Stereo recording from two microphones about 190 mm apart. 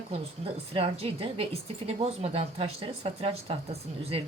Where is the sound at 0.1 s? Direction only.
30° right (ahead or behind).